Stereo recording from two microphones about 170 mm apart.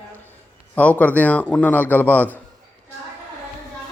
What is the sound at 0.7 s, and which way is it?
A man's voice, 10° left (ahead or behind).